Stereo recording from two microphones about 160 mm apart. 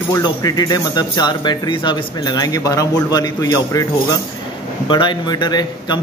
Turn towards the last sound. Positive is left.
turn(degrees=25)  # may be behind; listen again after turning